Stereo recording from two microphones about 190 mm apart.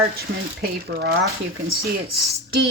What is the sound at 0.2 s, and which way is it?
Speech, 55° right (ahead or behind).